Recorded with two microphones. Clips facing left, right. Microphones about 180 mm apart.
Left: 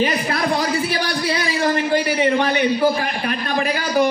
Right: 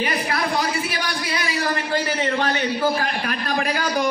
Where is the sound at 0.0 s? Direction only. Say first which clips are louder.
Left 4 dB; 30° left (ahead or behind).